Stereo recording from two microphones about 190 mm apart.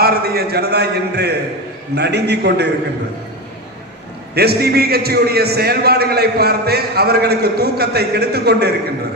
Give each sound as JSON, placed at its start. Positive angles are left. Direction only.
{"t": 0.0, "sound": "a man's voice", "side_deg": -55}
{"t": 4.4, "sound": "a man's voice", "side_deg": -55}